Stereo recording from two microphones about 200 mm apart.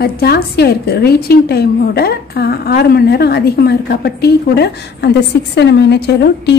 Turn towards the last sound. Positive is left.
turn(degrees=55)  # may be behind; listen again after turning